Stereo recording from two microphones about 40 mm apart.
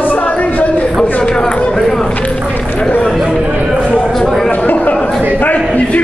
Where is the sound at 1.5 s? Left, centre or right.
Left.